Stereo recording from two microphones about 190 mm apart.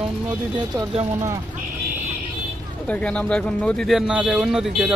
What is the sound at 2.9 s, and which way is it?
Speech, 5° left (ahead or behind).